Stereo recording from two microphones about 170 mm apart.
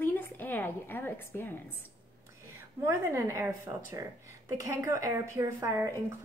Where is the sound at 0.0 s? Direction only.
10° left (ahead or behind).